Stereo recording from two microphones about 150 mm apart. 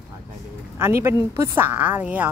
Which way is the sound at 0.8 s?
15° right (ahead or behind).